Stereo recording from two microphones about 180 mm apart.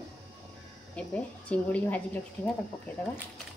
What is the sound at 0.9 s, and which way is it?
Speech, 5° left (ahead or behind).